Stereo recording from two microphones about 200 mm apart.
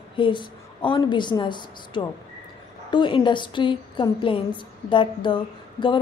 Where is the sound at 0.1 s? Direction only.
25° left (ahead or behind).